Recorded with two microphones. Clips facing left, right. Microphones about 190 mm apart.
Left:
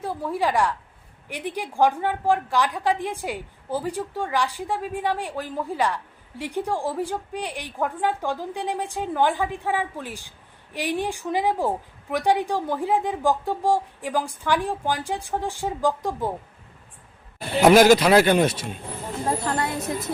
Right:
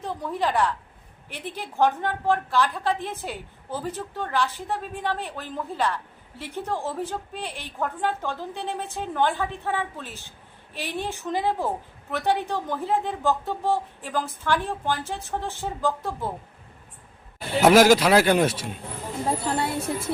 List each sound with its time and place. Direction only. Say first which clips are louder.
0.0 s a woman's voice: left 2 dB; 10° left (ahead or behind)
17.6 s speech: left 2 dB; 5° right (ahead or behind)